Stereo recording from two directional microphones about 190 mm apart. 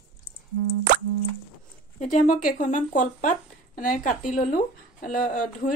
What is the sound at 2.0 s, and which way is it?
Speech, 40° left (ahead or behind).